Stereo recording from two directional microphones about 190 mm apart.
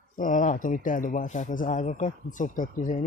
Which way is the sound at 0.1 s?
45° left (ahead or behind).